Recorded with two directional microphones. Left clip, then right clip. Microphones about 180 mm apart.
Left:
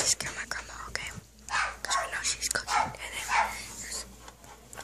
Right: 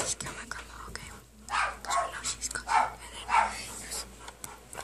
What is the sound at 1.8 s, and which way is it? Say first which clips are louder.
Dog: even; 15° left (ahead or behind).